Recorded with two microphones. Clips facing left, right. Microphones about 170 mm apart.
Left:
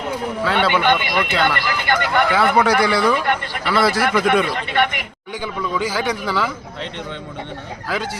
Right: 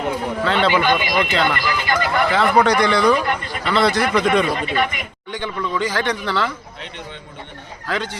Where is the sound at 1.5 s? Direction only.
65° left (ahead or behind).